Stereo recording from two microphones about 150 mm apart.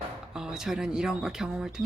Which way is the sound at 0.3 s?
5° right (ahead or behind).